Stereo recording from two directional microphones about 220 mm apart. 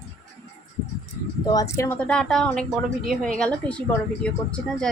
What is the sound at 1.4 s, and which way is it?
A woman's voice, 15° left (ahead or behind).